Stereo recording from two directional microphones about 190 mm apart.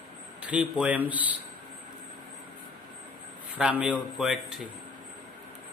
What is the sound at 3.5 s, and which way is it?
A man's voice, 5° right (ahead or behind).